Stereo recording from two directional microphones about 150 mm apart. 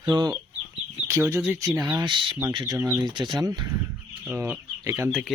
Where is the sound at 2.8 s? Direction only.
15° right (ahead or behind).